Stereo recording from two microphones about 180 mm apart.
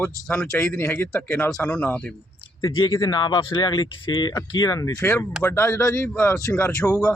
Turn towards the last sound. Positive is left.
turn(degrees=15)  # may be behind; listen again after turning